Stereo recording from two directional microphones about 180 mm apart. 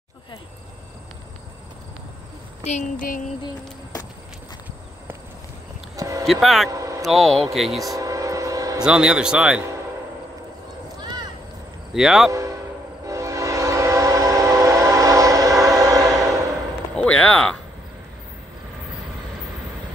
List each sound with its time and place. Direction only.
2.6 s a sound: 40° left (ahead or behind)
5.9 s vehicle: 20° right (ahead or behind)
6.2 s speech: centre (ahead or behind)
6.7 s a sound: 15° right (ahead or behind)
7.1 s speech: centre (ahead or behind)
7.8 s vehicle: 20° right (ahead or behind)
8.8 s speech: 5° right (ahead or behind)
11.0 s a sound: 25° right (ahead or behind)
11.9 s speech: centre (ahead or behind)
12.3 s speech: 20° right (ahead or behind)
13.0 s train: 15° right (ahead or behind)
16.9 s a sound: 5° left (ahead or behind)